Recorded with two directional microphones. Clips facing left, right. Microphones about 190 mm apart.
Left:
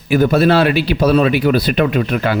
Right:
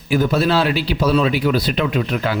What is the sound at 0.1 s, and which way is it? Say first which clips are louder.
A man's voice: left 5 dB; 60° left (ahead or behind).